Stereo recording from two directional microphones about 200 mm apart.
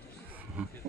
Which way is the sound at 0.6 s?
5° right (ahead or behind).